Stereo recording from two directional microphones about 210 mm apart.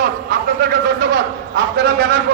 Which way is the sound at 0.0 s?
40° right (ahead or behind).